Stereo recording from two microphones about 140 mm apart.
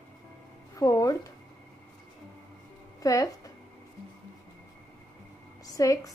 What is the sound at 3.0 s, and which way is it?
Speech, 25° left (ahead or behind).